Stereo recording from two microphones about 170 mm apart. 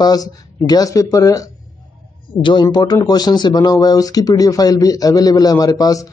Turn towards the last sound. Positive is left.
turn(degrees=20)  # may be behind; listen again after turning